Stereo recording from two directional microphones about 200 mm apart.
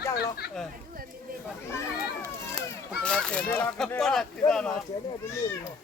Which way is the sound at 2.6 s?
5° left (ahead or behind).